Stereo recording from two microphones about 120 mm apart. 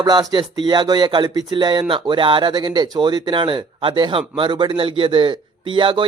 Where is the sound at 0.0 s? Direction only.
35° right (ahead or behind).